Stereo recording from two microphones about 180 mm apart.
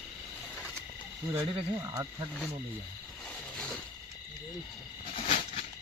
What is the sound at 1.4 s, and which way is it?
Speech, 25° right (ahead or behind).